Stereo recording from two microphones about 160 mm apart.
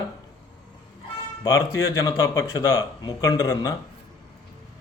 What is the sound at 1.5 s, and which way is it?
Speech, 20° left (ahead or behind).